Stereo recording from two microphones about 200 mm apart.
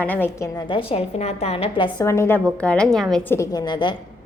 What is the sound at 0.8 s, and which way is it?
A woman's voice, 30° left (ahead or behind).